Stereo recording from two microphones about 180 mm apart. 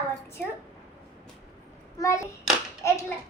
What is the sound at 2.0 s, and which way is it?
Speech, 15° left (ahead or behind).